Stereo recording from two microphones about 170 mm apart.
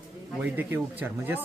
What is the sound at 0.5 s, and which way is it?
Speech, 10° right (ahead or behind).